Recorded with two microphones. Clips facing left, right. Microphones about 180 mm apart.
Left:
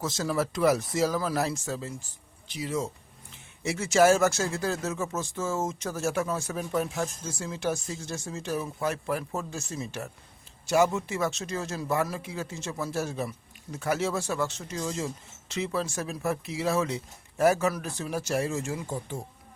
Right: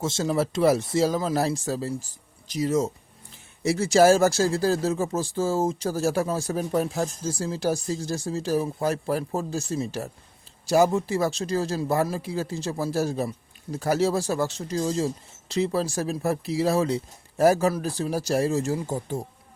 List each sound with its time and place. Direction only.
0.0 s speech: 25° right (ahead or behind)